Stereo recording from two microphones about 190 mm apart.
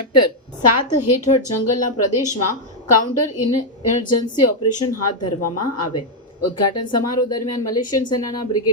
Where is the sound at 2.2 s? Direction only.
20° left (ahead or behind).